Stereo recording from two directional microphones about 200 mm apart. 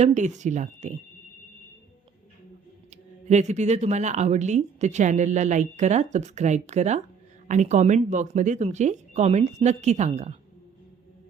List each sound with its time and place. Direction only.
0.0 s a woman's voice: 35° right (ahead or behind)
3.2 s a woman's voice: 35° right (ahead or behind)